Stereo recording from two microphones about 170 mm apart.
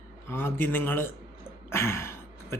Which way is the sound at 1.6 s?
15° left (ahead or behind).